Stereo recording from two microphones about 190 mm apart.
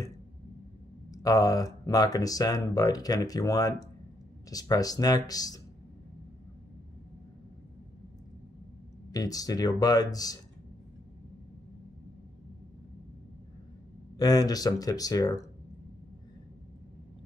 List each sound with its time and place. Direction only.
1.1 s speech: 20° left (ahead or behind)
9.1 s speech: 20° left (ahead or behind)
14.1 s speech: 20° left (ahead or behind)